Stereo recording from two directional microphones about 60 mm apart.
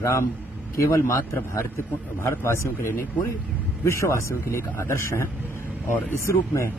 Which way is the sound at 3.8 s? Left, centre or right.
Left.